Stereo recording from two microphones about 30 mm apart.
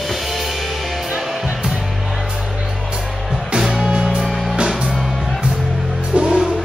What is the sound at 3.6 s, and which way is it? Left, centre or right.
Music, centre.